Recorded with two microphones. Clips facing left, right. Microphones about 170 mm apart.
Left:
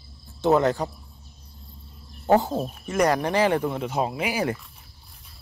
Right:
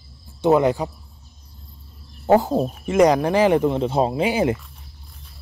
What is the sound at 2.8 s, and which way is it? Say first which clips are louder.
Speech: right 6 dB; 20° right (ahead or behind).